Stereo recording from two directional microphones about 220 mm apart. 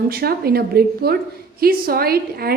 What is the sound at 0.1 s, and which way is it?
A woman's voice, 45° right (ahead or behind).